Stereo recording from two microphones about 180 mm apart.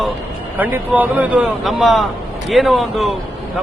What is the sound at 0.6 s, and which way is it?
A man's voice, 10° right (ahead or behind).